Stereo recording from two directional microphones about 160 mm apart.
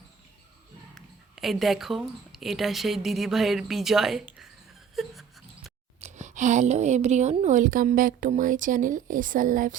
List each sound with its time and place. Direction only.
0.9 s speech: centre (ahead or behind)
5.0 s a sound: centre (ahead or behind)
6.0 s speech: 50° right (ahead or behind)